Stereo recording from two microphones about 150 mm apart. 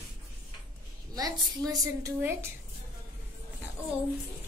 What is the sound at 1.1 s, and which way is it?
A woman's voice, 25° right (ahead or behind).